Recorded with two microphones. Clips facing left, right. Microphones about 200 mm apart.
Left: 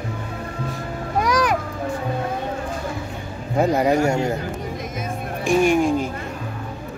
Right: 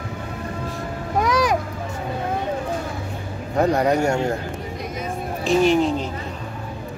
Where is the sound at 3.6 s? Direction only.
5° left (ahead or behind).